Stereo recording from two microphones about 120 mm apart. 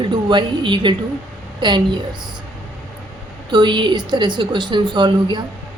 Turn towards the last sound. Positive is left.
turn(degrees=-40)  # may be behind; listen again after turning